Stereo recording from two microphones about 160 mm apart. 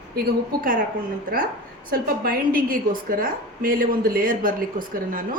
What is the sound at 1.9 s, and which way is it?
A woman's voice, 65° right (ahead or behind).